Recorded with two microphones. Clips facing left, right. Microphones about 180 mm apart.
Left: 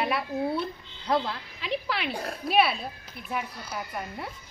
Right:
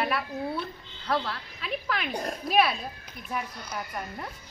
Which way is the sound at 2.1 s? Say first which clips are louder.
Right 2 dB; 15° right (ahead or behind).